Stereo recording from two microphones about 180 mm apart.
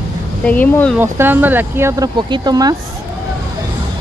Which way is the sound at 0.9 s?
10° right (ahead or behind).